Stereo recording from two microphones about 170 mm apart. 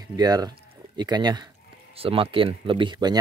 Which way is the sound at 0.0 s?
25° right (ahead or behind).